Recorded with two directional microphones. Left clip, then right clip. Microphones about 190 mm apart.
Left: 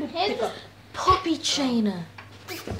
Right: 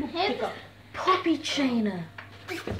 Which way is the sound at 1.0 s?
10° left (ahead or behind).